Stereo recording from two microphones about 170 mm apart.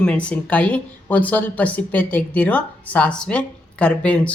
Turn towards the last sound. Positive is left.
turn(degrees=5)  # may be behind; listen again after turning